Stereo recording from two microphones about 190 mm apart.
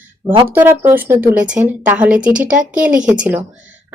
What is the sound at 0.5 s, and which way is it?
Speech, 10° right (ahead or behind).